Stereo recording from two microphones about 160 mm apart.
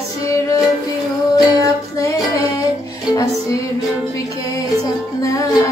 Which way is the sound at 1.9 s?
20° left (ahead or behind).